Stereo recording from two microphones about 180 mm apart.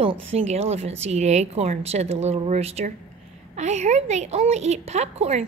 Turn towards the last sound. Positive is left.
turn(degrees=-35)  # may be behind; listen again after turning